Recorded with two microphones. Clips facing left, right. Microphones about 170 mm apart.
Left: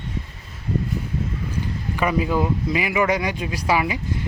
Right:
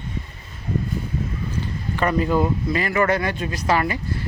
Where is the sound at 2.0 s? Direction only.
5° left (ahead or behind).